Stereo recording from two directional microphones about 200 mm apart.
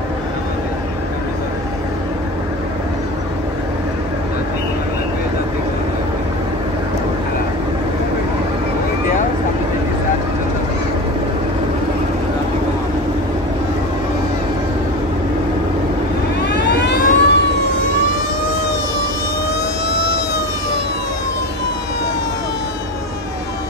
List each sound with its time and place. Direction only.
16.3 s vehicle: 55° left (ahead or behind)